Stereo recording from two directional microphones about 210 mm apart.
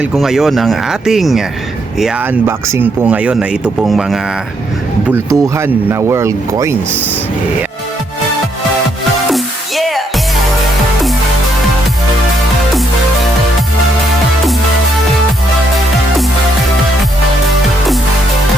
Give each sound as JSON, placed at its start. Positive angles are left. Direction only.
{"t": 0.0, "sound": "speech", "side_deg": 0}
{"t": 5.0, "sound": "speech", "side_deg": -10}
{"t": 9.3, "sound": "music", "side_deg": 0}